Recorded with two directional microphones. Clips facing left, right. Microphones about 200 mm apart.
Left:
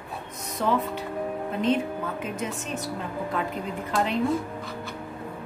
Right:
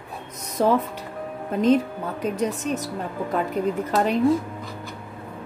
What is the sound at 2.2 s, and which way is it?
A woman's voice, 40° right (ahead or behind).